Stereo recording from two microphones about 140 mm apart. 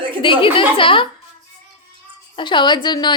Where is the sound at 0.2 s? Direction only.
35° left (ahead or behind).